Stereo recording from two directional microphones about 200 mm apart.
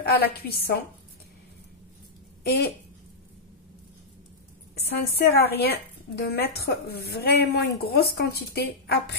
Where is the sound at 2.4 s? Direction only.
50° left (ahead or behind).